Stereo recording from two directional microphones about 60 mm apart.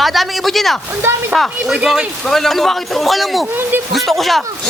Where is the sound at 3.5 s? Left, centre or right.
Right.